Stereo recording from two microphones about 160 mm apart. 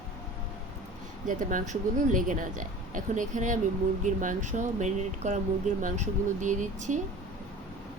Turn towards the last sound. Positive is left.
turn(degrees=-50)  # may be behind; listen again after turning